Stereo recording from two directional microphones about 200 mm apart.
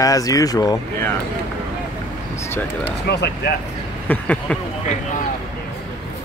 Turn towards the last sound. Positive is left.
turn(degrees=5)  # may be behind; listen again after turning